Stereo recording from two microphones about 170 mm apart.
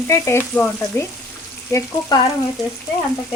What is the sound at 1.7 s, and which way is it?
Frying, 25° left (ahead or behind).